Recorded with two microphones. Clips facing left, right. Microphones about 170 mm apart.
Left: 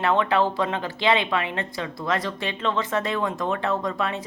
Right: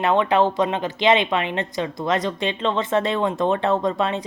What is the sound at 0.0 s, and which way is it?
Speech, 20° right (ahead or behind).